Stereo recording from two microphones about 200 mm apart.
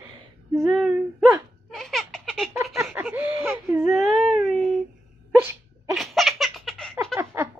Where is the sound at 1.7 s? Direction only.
Centre (ahead or behind).